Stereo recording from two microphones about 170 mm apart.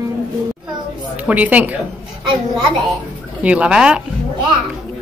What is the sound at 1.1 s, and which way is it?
Speech, 10° right (ahead or behind).